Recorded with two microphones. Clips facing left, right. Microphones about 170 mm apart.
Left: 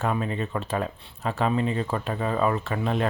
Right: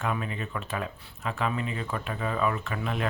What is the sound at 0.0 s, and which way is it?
Speech, 35° left (ahead or behind).